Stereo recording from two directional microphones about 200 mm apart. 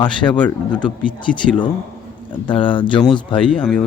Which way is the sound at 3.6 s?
5° left (ahead or behind).